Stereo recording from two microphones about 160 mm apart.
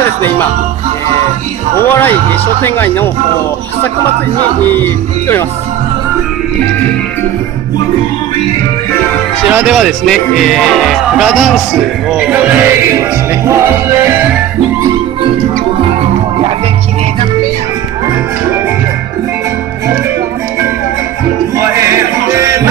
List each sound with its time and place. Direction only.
1.9 s music: 15° left (ahead or behind)
4.6 s music: 10° left (ahead or behind)
9.5 s speech: 10° right (ahead or behind)
21.5 s music: 15° right (ahead or behind)